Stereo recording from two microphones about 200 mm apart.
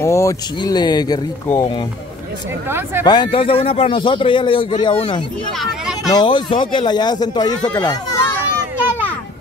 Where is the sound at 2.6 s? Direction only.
10° right (ahead or behind).